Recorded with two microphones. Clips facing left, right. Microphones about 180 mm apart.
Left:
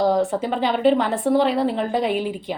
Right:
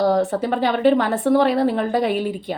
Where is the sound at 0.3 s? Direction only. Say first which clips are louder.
Right 2 dB; 55° right (ahead or behind).